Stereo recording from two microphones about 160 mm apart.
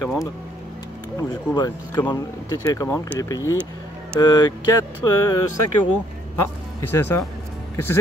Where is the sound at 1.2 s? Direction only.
20° left (ahead or behind).